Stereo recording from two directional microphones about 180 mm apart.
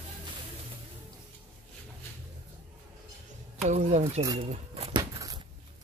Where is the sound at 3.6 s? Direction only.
40° right (ahead or behind).